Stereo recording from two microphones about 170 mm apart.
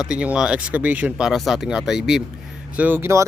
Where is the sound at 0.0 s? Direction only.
5° right (ahead or behind).